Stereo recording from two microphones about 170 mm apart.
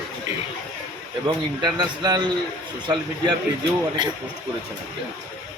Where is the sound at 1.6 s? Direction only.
25° right (ahead or behind).